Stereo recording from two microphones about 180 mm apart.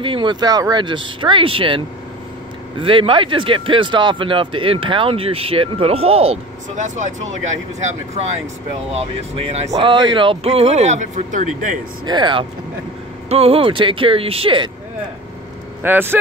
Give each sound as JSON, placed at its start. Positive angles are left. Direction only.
{"t": 0.0, "sound": "speech", "side_deg": -25}
{"t": 2.8, "sound": "speech", "side_deg": -30}
{"t": 9.3, "sound": "speech", "side_deg": -35}
{"t": 12.1, "sound": "speech", "side_deg": -25}
{"t": 15.8, "sound": "speech", "side_deg": -10}